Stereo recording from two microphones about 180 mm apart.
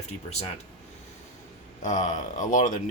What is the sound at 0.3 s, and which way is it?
Speech, 35° left (ahead or behind).